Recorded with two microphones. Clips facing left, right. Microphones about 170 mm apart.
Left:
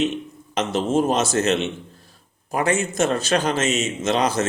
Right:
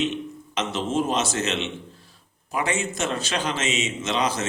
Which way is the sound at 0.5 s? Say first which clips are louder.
Left 5 dB; 45° left (ahead or behind).